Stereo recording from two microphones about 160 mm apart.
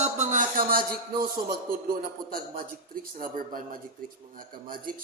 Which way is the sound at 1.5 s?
65° right (ahead or behind).